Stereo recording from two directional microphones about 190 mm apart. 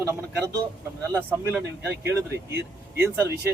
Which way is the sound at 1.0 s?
10° right (ahead or behind).